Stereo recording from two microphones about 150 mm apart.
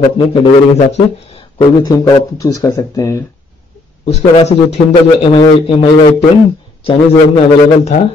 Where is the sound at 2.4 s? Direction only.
25° left (ahead or behind).